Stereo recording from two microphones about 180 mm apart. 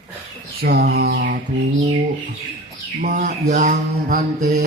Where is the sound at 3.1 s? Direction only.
45° right (ahead or behind).